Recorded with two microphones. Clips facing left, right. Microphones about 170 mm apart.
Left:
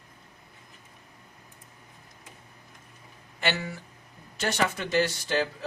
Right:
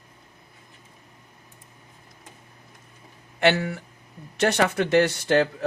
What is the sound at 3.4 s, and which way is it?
Speech, 65° right (ahead or behind).